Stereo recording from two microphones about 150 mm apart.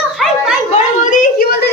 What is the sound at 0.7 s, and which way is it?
A woman's voice, 65° left (ahead or behind).